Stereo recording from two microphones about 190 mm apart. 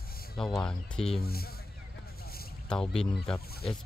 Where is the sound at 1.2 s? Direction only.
55° left (ahead or behind).